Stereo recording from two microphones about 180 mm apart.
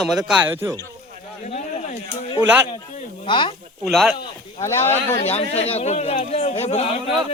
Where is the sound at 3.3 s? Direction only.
30° left (ahead or behind).